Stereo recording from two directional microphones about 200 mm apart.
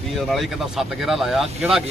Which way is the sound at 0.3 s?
Centre (ahead or behind).